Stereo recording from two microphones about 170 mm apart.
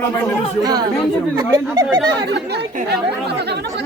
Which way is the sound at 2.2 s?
80° right.